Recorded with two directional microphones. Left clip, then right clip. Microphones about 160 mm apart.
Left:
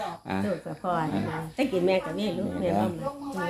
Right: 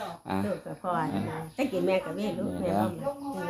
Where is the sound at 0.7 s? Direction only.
15° left (ahead or behind).